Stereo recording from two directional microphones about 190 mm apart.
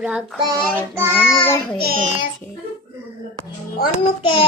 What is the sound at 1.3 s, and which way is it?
Speech, 10° left (ahead or behind).